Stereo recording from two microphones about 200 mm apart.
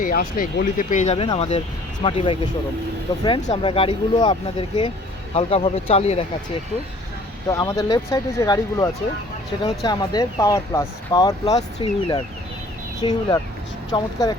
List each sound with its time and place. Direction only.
0.0 s speech: 45° left (ahead or behind); by 6.2 s 30° left (ahead or behind)
7.4 s speech: 15° left (ahead or behind)